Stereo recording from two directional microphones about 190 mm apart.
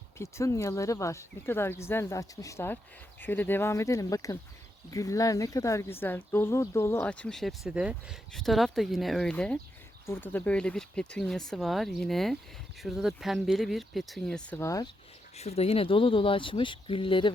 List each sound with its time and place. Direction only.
0.2 s speech: 15° left (ahead or behind)
15.4 s speech: 35° left (ahead or behind)